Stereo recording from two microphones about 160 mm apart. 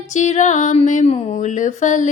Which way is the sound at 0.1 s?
45° left (ahead or behind).